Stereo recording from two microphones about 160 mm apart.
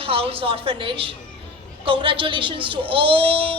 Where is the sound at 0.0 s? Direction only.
35° right (ahead or behind).